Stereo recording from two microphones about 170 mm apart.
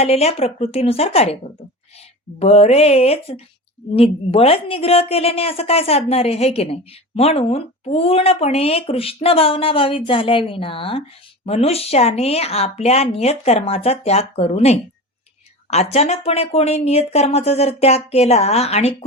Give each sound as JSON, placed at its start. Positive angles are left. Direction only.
{"t": 0.0, "sound": "speech", "side_deg": 35}
{"t": 2.4, "sound": "speech", "side_deg": 40}